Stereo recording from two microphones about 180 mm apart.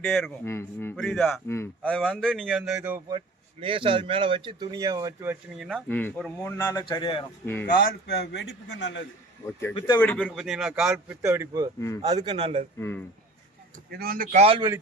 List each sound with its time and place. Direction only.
0.0 s speech: 5° left (ahead or behind)
1.5 s speech: 15° left (ahead or behind); by 3.0 s 5° right (ahead or behind)
3.1 s speech: 25° right (ahead or behind); by 5.6 s 10° right (ahead or behind)
5.6 s speech: 5° left (ahead or behind)
6.7 s a man's voice: 25° left (ahead or behind)
7.4 s speech: 10° left (ahead or behind)
7.9 s speech: 65° left (ahead or behind); by 9.0 s 85° left
10.0 s speech: 10° left (ahead or behind)
11.2 s speech: 15° right (ahead or behind); by 12.6 s 30° right (ahead or behind)
12.8 s speech: 15° left (ahead or behind)
13.9 s speech: 55° right (ahead or behind)
14.3 s speech: 35° right (ahead or behind)